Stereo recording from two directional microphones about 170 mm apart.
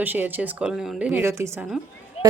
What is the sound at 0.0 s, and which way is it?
A woman's voice, 10° right (ahead or behind).